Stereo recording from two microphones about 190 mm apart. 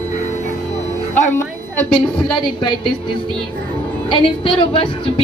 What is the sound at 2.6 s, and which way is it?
Speech, 25° left (ahead or behind).